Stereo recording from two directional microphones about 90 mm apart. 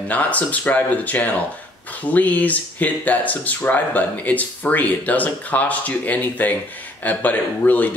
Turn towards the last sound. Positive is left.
turn(degrees=20)  # may be behind; listen again after turning